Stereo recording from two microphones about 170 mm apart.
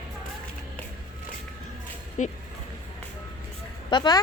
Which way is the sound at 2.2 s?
45° left (ahead or behind).